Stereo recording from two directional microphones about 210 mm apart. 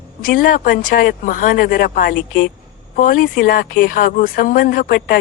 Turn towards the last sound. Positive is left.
turn(degrees=45)  # may be behind; listen again after turning